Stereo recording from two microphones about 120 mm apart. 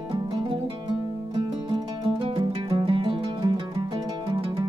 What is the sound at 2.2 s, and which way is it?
Music, 50° right (ahead or behind).